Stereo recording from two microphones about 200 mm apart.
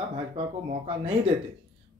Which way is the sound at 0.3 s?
30° right (ahead or behind).